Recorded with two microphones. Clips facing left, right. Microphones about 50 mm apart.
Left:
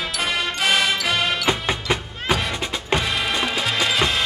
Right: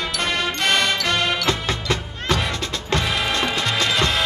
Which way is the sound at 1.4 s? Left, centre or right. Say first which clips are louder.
Left 1 dB; centre.